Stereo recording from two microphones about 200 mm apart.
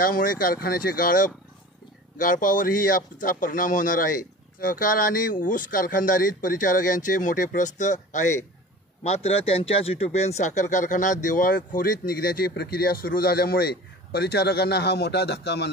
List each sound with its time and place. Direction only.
0.0 s speech: 45° left (ahead or behind)